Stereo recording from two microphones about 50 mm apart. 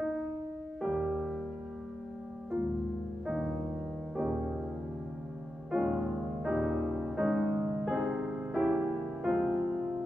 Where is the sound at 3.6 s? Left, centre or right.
Centre.